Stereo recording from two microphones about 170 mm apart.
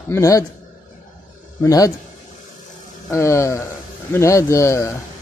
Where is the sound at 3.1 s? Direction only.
15° left (ahead or behind).